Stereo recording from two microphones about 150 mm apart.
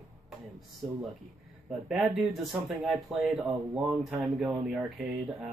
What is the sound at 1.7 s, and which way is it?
Speech, centre (ahead or behind).